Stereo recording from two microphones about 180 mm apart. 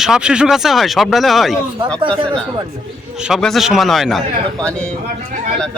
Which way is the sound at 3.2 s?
Centre (ahead or behind).